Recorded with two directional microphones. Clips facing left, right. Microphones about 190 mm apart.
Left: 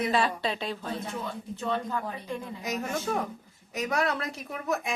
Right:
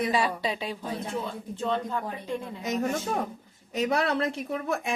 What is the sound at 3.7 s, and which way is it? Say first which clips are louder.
A woman's voice: right 3 dB; 30° right (ahead or behind).